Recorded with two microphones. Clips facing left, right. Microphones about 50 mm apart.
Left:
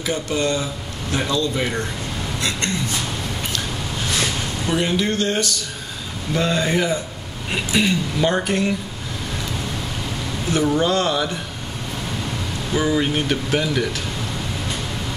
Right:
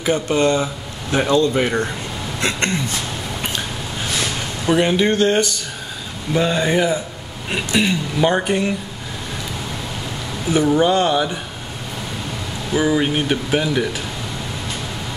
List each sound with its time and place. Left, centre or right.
0.0 s a man's voice: right
4.6 s speech: right
6.3 s speech: centre
10.5 s speech: centre
12.7 s speech: centre